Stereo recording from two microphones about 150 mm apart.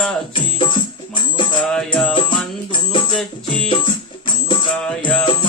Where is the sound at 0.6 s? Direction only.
35° left (ahead or behind).